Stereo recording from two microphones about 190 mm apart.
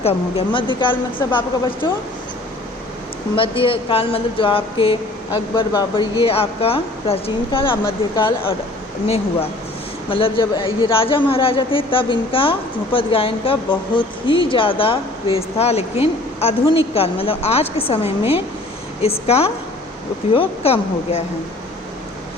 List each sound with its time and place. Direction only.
0.0 s a man's voice: 30° left (ahead or behind)
3.3 s a man's voice: 30° left (ahead or behind)